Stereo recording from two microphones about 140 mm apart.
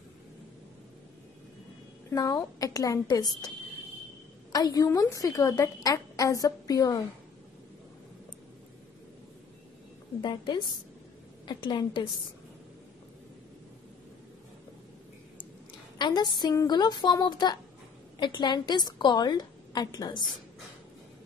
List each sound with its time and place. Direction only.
2.1 s a woman's voice: 25° left (ahead or behind)
4.5 s a woman's voice: 25° left (ahead or behind)
10.2 s a woman's voice: 30° left (ahead or behind)
16.0 s a woman's voice: 30° left (ahead or behind)